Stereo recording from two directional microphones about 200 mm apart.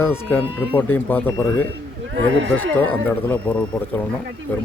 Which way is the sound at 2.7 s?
10° left (ahead or behind).